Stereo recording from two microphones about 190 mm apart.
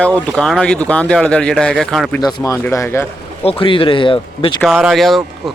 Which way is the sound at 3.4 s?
30° left (ahead or behind).